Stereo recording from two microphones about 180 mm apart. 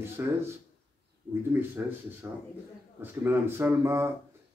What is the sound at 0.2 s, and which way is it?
Speech, 15° right (ahead or behind).